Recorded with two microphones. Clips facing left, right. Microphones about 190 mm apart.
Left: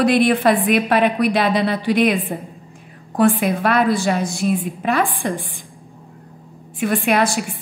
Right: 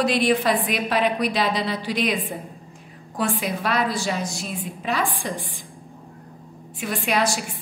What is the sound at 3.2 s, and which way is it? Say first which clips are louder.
A woman's voice: left 9 dB; 55° left (ahead or behind).